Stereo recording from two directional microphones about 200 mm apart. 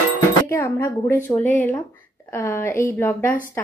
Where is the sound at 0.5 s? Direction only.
10° left (ahead or behind).